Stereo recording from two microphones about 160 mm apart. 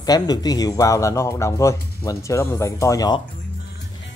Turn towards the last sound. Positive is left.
turn(degrees=25)  # may be behind; listen again after turning